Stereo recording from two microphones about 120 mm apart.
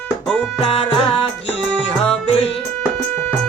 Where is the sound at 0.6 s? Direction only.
50° left (ahead or behind).